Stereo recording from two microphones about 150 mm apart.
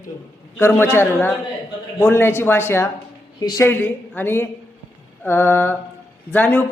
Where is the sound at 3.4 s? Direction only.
25° left (ahead or behind).